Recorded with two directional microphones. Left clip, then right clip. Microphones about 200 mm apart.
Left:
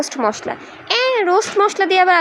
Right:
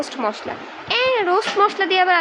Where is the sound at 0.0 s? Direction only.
30° left (ahead or behind).